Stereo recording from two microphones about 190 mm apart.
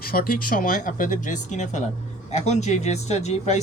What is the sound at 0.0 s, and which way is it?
Speech, 50° left (ahead or behind).